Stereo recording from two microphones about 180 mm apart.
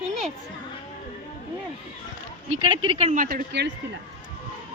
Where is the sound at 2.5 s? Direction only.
30° right (ahead or behind).